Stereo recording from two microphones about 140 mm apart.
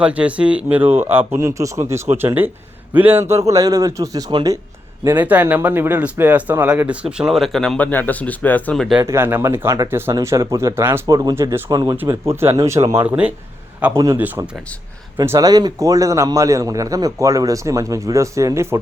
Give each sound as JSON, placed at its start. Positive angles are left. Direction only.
{"t": 0.0, "sound": "a man's voice", "side_deg": -10}
{"t": 5.0, "sound": "speech", "side_deg": -10}
{"t": 9.0, "sound": "a man's voice", "side_deg": -15}
{"t": 13.1, "sound": "speech", "side_deg": -10}
{"t": 13.9, "sound": "speech", "side_deg": -20}
{"t": 15.2, "sound": "a man's voice", "side_deg": -25}